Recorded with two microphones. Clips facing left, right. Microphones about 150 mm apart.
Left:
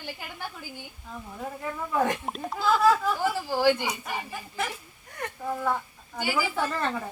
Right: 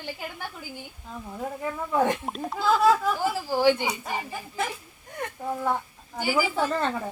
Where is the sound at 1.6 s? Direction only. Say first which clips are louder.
Right 2 dB; 25° right (ahead or behind).